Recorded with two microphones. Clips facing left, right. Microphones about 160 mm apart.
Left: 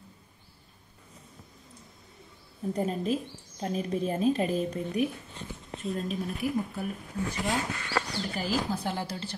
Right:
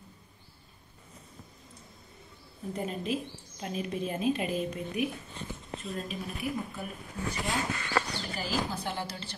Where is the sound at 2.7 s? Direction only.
40° left (ahead or behind).